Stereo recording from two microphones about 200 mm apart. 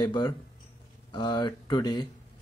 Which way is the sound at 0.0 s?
20° left (ahead or behind).